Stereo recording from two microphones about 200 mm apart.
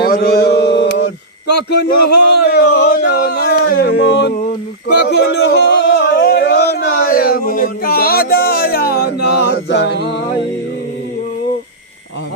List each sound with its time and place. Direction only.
0.0 s mantra: 50° left (ahead or behind)
1.5 s a man's voice: 55° left (ahead or behind)
3.0 s a sound: 50° left (ahead or behind)